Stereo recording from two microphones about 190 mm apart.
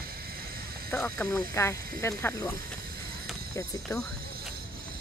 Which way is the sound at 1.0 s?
15° left (ahead or behind).